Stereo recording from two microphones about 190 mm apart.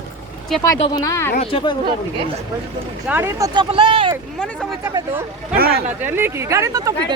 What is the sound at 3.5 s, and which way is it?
Speech, 30° right (ahead or behind).